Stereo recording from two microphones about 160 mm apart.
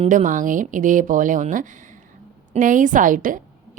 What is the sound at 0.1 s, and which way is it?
A woman's voice, 55° right (ahead or behind).